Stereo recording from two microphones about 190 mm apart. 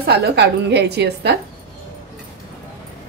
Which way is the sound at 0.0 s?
60° right (ahead or behind).